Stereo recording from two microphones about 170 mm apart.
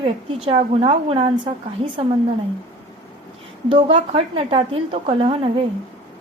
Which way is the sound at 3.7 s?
30° right (ahead or behind).